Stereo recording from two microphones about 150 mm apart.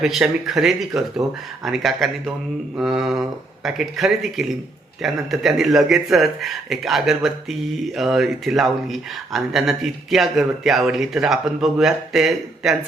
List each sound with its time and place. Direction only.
0.0 s speech: centre (ahead or behind)